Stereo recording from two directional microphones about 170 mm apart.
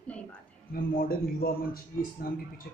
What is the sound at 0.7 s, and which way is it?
Speech, 60° left (ahead or behind).